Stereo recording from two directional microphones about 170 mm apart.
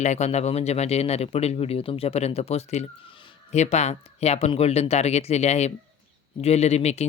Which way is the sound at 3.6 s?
40° left (ahead or behind).